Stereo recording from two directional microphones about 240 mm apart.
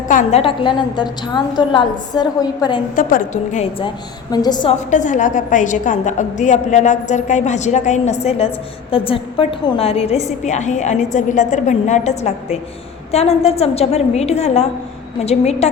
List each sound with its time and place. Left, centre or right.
0.1 s a woman's voice: left
2.9 s a woman's voice: left; by 4.7 s centre
4.9 s a woman's voice: left